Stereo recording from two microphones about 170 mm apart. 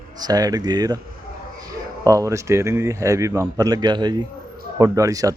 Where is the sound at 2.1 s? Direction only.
20° right (ahead or behind).